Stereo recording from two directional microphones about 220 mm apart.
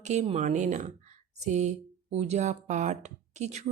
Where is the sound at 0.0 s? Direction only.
30° right (ahead or behind).